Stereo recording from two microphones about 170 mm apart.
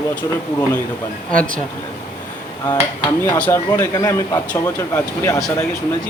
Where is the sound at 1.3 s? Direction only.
5° left (ahead or behind).